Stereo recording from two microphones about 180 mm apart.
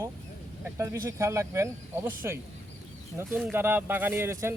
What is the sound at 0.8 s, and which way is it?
Speech, 15° right (ahead or behind).